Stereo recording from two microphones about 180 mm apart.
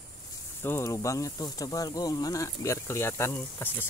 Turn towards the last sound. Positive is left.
turn(degrees=10)  # may be behind; listen again after turning